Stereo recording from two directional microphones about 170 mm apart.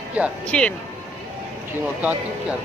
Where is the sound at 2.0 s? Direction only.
10° right (ahead or behind).